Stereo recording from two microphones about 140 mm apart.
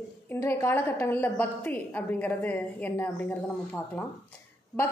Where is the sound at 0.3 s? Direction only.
20° left (ahead or behind).